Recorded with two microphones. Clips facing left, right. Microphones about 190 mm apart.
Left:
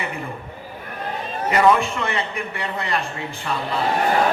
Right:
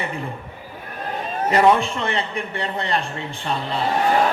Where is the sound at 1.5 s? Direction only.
35° right (ahead or behind).